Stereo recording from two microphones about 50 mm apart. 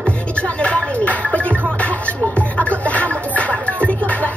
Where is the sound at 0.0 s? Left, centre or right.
Left.